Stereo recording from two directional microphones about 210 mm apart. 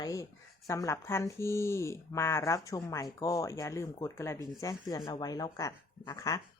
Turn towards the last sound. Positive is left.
turn(degrees=15)  # may be behind; listen again after turning